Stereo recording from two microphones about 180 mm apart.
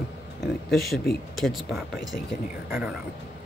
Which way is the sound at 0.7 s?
Centre (ahead or behind).